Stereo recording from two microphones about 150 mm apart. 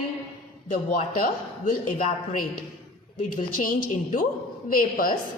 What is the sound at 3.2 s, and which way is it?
A woman's voice, 60° left (ahead or behind).